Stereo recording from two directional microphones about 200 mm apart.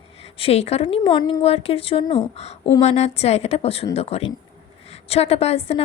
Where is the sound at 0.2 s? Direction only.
30° left (ahead or behind).